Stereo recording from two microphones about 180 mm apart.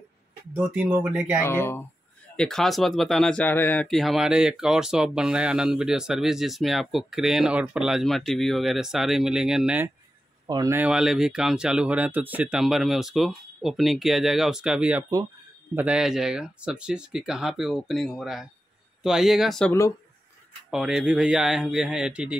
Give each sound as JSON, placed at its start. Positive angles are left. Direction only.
{"t": 0.6, "sound": "speech", "side_deg": -5}
{"t": 1.4, "sound": "speech", "side_deg": 10}
{"t": 10.4, "sound": "speech", "side_deg": -20}
{"t": 10.8, "sound": "speech", "side_deg": -5}
{"t": 20.7, "sound": "speech", "side_deg": -5}